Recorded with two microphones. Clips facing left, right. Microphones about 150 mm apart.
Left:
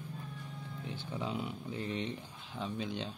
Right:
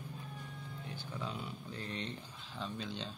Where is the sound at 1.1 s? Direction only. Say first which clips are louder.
Left 5 dB; 20° left (ahead or behind).